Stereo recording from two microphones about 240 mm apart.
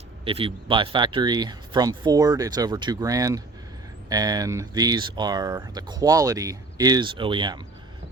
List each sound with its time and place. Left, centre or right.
0.3 s speech: right